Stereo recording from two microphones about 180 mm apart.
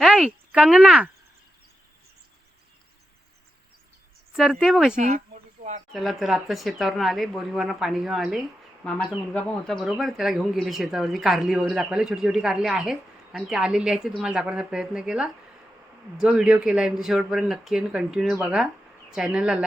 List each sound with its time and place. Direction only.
0.0 s speech: 5° right (ahead or behind)
4.4 s speech: centre (ahead or behind)
4.9 s a sound: 45° right (ahead or behind)
5.9 s speech: centre (ahead or behind)